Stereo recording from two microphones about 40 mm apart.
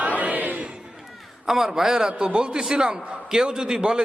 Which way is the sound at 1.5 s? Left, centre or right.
Centre.